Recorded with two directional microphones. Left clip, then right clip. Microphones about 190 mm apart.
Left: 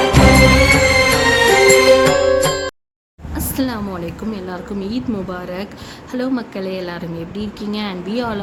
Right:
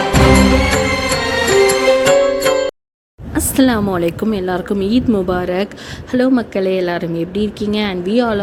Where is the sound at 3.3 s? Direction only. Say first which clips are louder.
Right 8 dB; 35° right (ahead or behind).